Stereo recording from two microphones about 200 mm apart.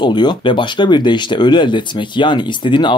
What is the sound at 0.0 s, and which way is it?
Speech, 20° left (ahead or behind).